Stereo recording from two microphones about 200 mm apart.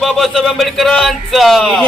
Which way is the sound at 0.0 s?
Centre (ahead or behind).